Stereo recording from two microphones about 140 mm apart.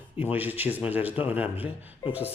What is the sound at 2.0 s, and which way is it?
Speech, 25° left (ahead or behind).